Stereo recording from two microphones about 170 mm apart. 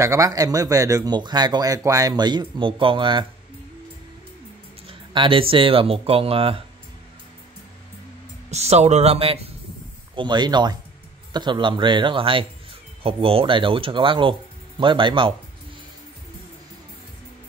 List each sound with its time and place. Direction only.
0.0 s speech: 20° right (ahead or behind)
4.8 s speech: 30° right (ahead or behind)
8.5 s speech: 40° right (ahead or behind)